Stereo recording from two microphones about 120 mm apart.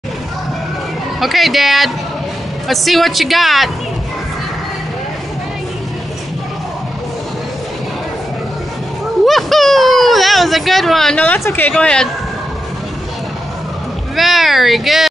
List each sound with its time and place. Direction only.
1.2 s a woman's voice: centre (ahead or behind)
9.2 s a sound: centre (ahead or behind)
11.1 s speech: 15° left (ahead or behind)
11.7 s speech: 5° left (ahead or behind)
14.1 s speech: centre (ahead or behind)